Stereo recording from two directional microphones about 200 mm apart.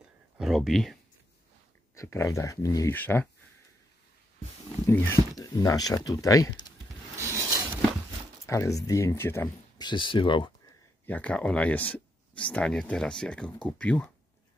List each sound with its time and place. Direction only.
0.4 s speech: centre (ahead or behind)
2.0 s speech: 15° left (ahead or behind)
4.8 s speech: 15° left (ahead or behind)
7.2 s a sound: 15° right (ahead or behind)
8.5 s speech: 15° left (ahead or behind)
11.1 s speech: 5° left (ahead or behind)